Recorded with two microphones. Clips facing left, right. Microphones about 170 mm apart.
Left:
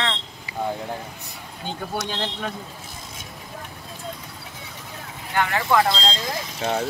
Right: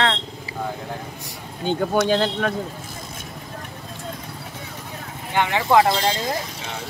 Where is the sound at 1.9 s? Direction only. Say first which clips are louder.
Right 9 dB; 85° right.